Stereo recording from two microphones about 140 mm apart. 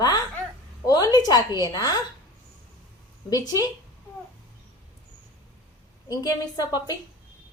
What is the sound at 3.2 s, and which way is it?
Speech, 30° left (ahead or behind).